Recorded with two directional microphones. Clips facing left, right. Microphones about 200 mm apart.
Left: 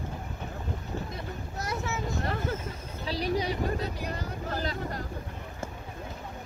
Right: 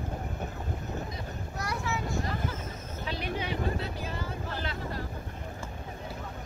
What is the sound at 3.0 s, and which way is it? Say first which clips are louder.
Vehicle: left 5 dB; 35° left (ahead or behind).